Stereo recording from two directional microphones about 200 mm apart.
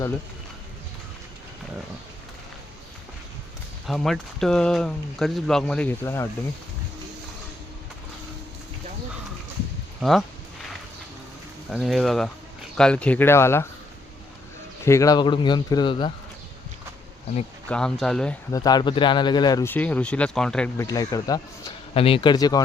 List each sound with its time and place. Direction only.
3.8 s speech: centre (ahead or behind)
10.0 s speech: centre (ahead or behind)
11.7 s speech: centre (ahead or behind)
14.8 s a man's voice: 15° left (ahead or behind)
17.7 s speech: 5° left (ahead or behind)
18.5 s speech: 20° left (ahead or behind); by 20.7 s 5° left (ahead or behind)
20.7 s a man's voice: 20° left (ahead or behind)